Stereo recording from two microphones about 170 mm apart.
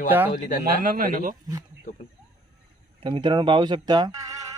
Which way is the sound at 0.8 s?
50° right (ahead or behind).